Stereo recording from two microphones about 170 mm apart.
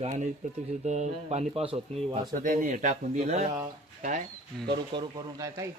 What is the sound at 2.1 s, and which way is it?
A man's voice, 50° right (ahead or behind).